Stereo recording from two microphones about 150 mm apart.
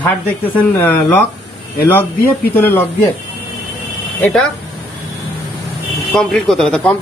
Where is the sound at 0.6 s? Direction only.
15° left (ahead or behind).